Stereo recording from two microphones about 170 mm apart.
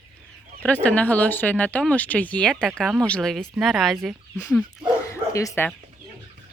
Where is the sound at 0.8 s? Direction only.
10° left (ahead or behind).